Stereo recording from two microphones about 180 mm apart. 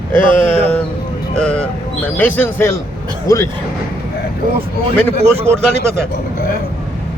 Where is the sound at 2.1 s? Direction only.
10° left (ahead or behind).